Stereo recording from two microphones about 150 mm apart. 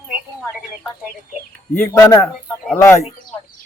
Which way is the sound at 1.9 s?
20° left (ahead or behind).